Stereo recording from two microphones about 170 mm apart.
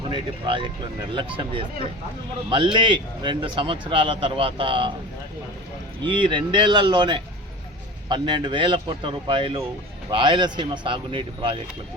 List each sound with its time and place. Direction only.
0.1 s speech: 30° right (ahead or behind)
6.0 s speech: 30° right (ahead or behind)